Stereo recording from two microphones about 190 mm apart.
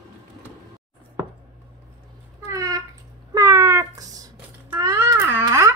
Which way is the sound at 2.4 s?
20° right (ahead or behind).